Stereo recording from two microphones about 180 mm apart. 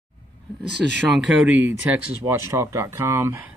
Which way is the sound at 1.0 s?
5° right (ahead or behind).